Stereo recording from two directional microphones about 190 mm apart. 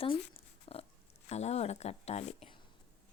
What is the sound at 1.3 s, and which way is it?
Speech, 35° left (ahead or behind).